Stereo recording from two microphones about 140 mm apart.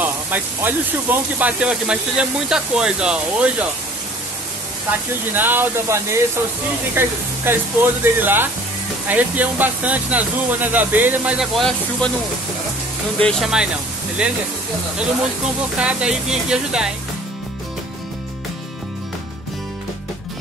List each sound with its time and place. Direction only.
0.0 s speech: 15° right (ahead or behind)
5.3 s speech: 15° right (ahead or behind)
11.5 s speech: 5° left (ahead or behind)
13.2 s speech: centre (ahead or behind)
15.8 s speech: 10° right (ahead or behind)